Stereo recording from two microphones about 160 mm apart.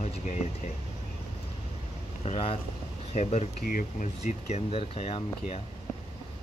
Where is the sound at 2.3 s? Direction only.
35° left (ahead or behind).